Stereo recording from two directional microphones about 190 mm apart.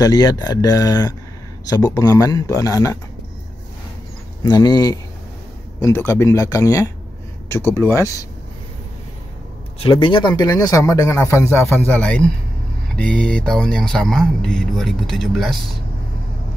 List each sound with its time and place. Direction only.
0.0 s speech: 20° left (ahead or behind)
4.4 s speech: 20° left (ahead or behind)
9.8 s speech: 25° left (ahead or behind); by 15.6 s centre (ahead or behind)